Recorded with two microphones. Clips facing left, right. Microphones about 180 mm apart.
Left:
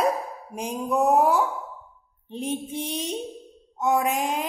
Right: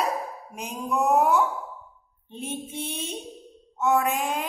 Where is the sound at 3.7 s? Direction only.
15° left (ahead or behind).